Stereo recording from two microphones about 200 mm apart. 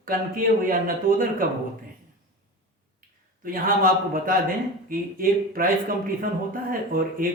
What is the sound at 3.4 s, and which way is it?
Speech, 45° right (ahead or behind).